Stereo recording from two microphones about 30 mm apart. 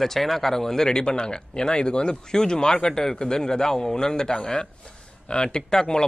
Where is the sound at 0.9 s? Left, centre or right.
Left.